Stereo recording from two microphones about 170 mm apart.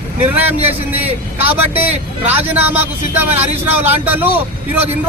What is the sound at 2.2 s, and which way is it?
Speech, 10° right (ahead or behind).